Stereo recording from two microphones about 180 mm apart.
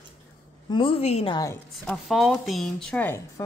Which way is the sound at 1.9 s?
Centre (ahead or behind).